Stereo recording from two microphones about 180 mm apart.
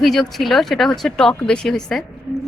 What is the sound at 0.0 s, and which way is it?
Speech, centre (ahead or behind).